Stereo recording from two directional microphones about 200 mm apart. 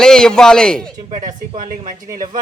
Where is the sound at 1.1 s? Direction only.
40° right (ahead or behind).